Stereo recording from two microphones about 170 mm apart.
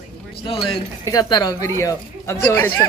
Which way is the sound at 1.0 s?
20° left (ahead or behind).